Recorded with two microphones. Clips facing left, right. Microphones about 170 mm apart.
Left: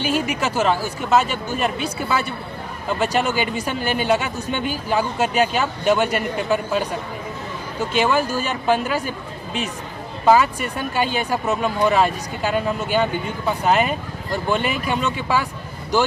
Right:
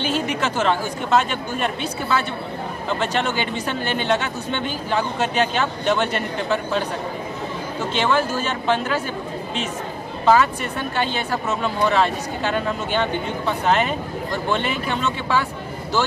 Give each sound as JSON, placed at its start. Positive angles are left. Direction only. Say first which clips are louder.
{"t": 0.0, "sound": "speech", "louder": "left 1 dB", "side_deg": 10}
{"t": 7.9, "sound": "speech", "louder": "left 1 dB", "side_deg": 10}
{"t": 10.2, "sound": "speech", "louder": "left 1 dB", "side_deg": 10}